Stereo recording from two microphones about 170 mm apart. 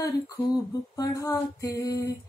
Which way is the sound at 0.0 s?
20° left (ahead or behind).